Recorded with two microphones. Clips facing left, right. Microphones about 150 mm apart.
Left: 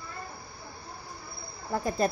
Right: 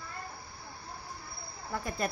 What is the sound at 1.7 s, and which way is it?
Speech, 35° left (ahead or behind).